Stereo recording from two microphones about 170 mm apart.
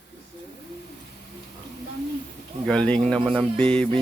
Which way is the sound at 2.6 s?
5° left (ahead or behind).